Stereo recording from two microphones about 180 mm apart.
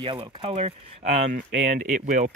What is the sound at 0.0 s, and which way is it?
Speech, 30° right (ahead or behind).